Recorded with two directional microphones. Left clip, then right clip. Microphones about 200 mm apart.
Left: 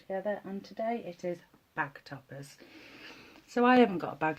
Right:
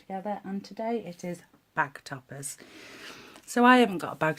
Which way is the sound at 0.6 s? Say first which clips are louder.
Right 2 dB; 40° right (ahead or behind).